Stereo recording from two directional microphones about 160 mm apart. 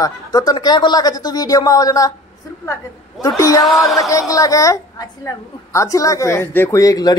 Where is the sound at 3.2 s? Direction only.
20° left (ahead or behind).